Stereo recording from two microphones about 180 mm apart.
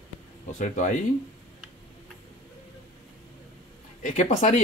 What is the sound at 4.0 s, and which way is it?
Speech, 45° left (ahead or behind).